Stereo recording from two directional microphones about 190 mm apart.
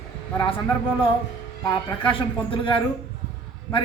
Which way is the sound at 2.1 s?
25° left (ahead or behind).